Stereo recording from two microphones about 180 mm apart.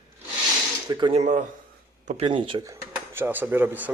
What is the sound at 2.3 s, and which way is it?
Speech, 25° right (ahead or behind).